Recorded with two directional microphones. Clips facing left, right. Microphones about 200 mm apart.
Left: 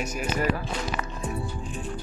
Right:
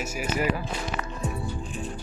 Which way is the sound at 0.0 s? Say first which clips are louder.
Even; 5° right (ahead or behind).